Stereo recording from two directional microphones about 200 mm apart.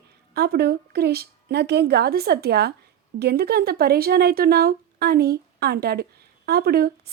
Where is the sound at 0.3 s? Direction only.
55° right (ahead or behind).